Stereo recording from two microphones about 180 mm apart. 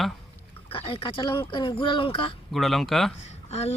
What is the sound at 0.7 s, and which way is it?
Speech, 30° left (ahead or behind).